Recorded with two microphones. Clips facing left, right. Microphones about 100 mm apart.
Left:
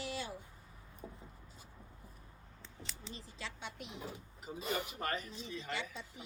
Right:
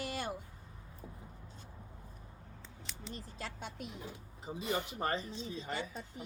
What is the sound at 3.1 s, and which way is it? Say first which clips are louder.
Speech: right 4 dB; 50° right (ahead or behind).